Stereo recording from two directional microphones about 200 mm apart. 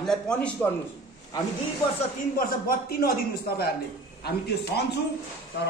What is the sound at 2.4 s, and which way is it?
A man's voice, 45° left (ahead or behind).